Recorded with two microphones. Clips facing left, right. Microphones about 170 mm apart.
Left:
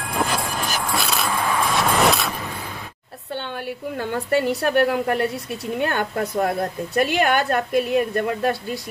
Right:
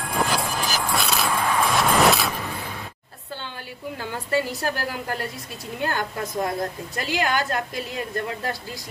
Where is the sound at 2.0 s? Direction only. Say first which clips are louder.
Even; centre (ahead or behind).